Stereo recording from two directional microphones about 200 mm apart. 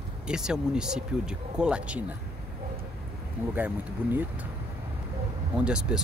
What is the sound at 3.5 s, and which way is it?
Speech, 10° right (ahead or behind).